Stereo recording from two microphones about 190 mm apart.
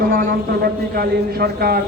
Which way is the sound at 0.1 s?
50° right (ahead or behind).